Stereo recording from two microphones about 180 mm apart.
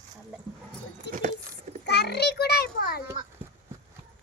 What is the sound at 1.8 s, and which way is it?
A child's voice, 65° left (ahead or behind).